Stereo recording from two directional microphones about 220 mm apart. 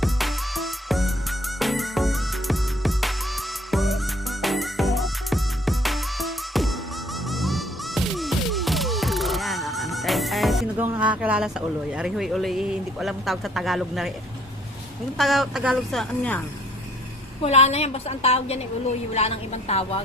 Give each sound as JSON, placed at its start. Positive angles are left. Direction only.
{"t": 0.0, "sound": "music", "side_deg": 0}
{"t": 15.2, "sound": "speech", "side_deg": 0}
{"t": 17.4, "sound": "a woman's voice", "side_deg": 30}